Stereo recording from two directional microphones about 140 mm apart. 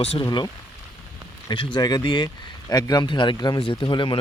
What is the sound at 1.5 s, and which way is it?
Speech, 30° left (ahead or behind).